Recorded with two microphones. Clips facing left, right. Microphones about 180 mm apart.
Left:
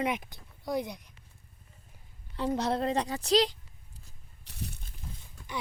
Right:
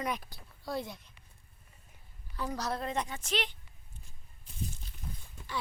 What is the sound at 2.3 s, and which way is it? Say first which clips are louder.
A woman's voice: left 6 dB; 25° left (ahead or behind).